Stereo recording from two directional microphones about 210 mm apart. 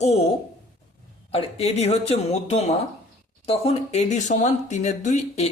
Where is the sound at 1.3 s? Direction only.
30° left (ahead or behind).